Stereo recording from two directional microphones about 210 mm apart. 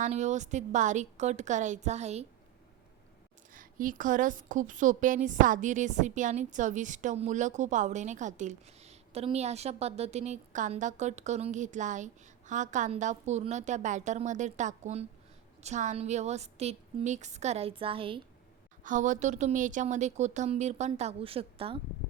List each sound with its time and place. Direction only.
0.0 s a woman's voice: 35° right (ahead or behind)
3.5 s a woman's voice: 40° right (ahead or behind)
18.8 s a woman's voice: 35° right (ahead or behind)